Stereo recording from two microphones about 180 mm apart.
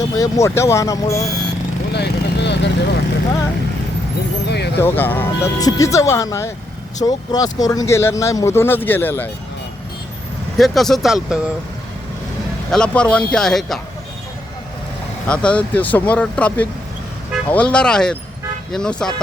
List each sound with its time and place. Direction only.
0.2 s speech: 15° left (ahead or behind)
1.9 s speech: 70° left (ahead or behind)
4.4 s speech: 70° left (ahead or behind)
4.8 s speech: 10° left (ahead or behind)
10.6 s speech: centre (ahead or behind)
12.7 s speech: 5° left (ahead or behind)
15.3 s speech: 5° left (ahead or behind)